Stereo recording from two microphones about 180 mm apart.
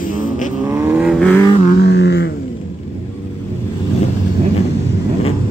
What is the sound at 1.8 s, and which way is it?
Music, 65° left (ahead or behind).